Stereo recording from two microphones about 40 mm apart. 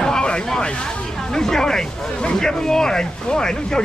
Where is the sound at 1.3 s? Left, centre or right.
Centre.